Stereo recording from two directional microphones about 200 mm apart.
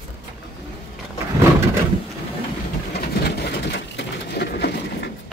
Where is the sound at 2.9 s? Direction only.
50° left (ahead or behind).